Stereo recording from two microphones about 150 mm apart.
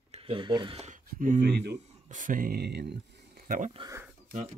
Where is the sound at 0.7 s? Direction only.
50° right (ahead or behind).